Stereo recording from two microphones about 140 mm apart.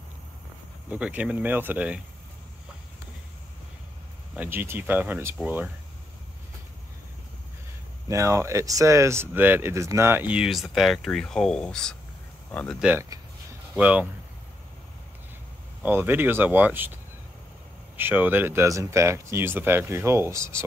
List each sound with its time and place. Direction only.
0.8 s speech: 10° right (ahead or behind)
4.4 s speech: 15° right (ahead or behind)
8.1 s speech: 20° right (ahead or behind); by 12.7 s 10° left (ahead or behind)
13.7 s speech: 10° right (ahead or behind)
15.8 s speech: 15° right (ahead or behind)
17.9 s speech: 15° right (ahead or behind)